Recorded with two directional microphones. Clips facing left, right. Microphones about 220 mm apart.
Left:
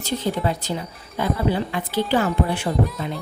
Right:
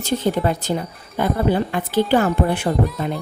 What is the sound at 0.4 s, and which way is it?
A woman's voice, 50° right (ahead or behind).